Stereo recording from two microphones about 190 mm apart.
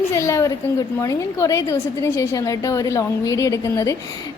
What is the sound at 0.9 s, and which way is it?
A woman's voice, 15° left (ahead or behind).